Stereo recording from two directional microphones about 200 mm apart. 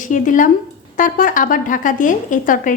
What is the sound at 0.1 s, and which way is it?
Speech, 40° left (ahead or behind).